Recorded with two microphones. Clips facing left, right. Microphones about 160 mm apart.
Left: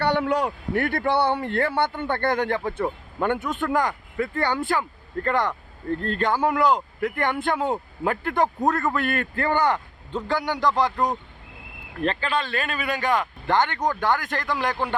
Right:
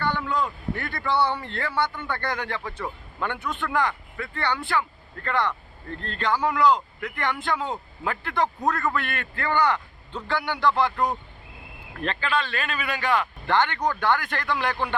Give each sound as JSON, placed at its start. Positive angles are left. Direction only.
{"t": 0.0, "sound": "speech", "side_deg": 70}
{"t": 8.6, "sound": "a man's voice", "side_deg": 25}
{"t": 9.0, "sound": "speech", "side_deg": 40}
{"t": 10.9, "sound": "speech", "side_deg": 15}
{"t": 12.0, "sound": "speech", "side_deg": 40}
{"t": 13.7, "sound": "a man's voice", "side_deg": 20}
{"t": 14.0, "sound": "speech", "side_deg": 40}